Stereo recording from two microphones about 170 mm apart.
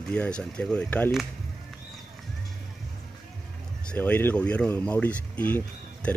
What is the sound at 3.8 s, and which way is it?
Speech, 10° left (ahead or behind).